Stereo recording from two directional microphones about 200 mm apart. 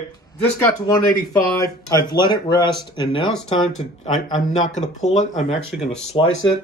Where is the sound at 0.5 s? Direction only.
20° left (ahead or behind).